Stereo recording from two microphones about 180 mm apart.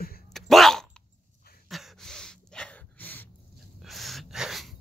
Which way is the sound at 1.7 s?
Centre (ahead or behind).